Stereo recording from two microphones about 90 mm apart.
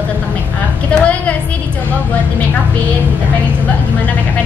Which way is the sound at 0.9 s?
15° left (ahead or behind).